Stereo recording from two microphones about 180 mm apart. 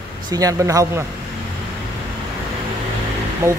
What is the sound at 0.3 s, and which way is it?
Speech, 20° right (ahead or behind).